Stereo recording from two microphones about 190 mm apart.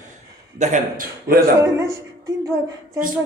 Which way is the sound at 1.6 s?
15° right (ahead or behind).